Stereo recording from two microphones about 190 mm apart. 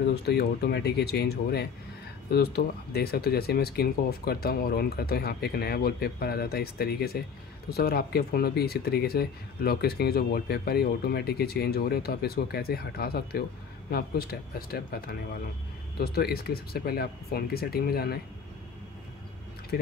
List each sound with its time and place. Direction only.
0.0 s speech: 55° left (ahead or behind)
19.7 s speech: 55° left (ahead or behind)